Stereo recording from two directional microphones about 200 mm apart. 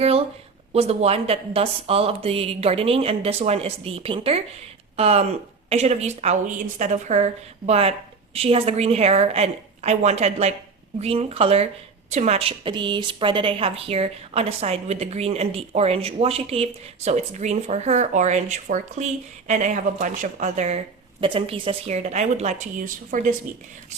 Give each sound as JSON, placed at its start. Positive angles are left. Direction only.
{"t": 0.7, "sound": "a woman's voice", "side_deg": -30}